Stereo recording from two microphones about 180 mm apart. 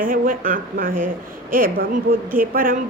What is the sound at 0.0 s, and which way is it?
A woman's voice, 50° right (ahead or behind).